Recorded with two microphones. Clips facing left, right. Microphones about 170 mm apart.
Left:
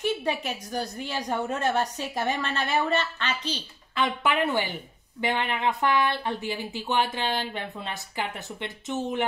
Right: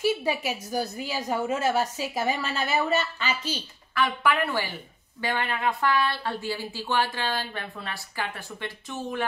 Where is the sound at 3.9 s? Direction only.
20° left (ahead or behind).